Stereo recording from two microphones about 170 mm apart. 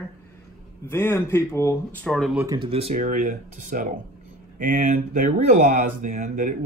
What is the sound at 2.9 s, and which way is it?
Speech, 50° right (ahead or behind).